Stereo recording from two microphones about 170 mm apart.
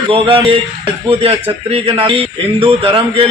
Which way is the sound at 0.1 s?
30° right (ahead or behind).